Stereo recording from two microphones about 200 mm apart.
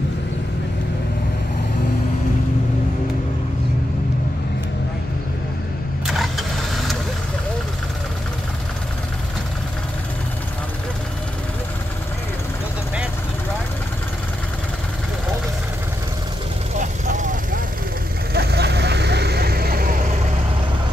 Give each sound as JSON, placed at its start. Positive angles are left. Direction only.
{"t": 6.0, "sound": "vehicle", "side_deg": 0}
{"t": 16.7, "sound": "vehicle", "side_deg": -40}
{"t": 18.3, "sound": "vehicle", "side_deg": -55}